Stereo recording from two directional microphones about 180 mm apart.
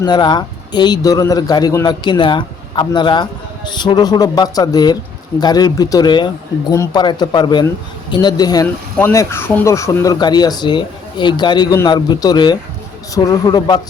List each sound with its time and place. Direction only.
0.0 s speech: 25° left (ahead or behind)